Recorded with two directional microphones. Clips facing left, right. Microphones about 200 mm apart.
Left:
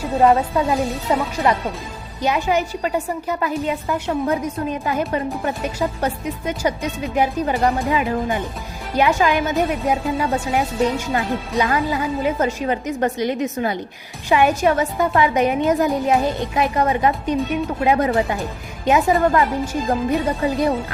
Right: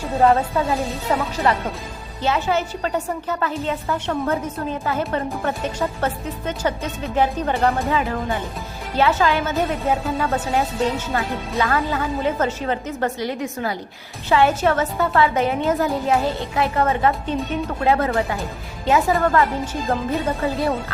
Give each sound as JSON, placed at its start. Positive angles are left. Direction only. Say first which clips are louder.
{"t": 0.2, "sound": "a woman's voice", "louder": "left 1 dB", "side_deg": 15}